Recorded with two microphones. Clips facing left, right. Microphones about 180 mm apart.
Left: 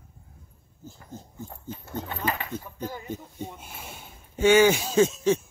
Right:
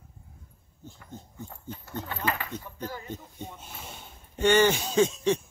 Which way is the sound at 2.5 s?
10° left (ahead or behind).